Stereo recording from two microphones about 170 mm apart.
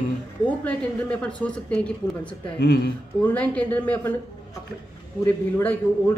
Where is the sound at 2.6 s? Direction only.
70° left (ahead or behind).